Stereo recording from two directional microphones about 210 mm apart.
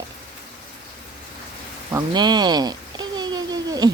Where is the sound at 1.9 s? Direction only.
15° right (ahead or behind).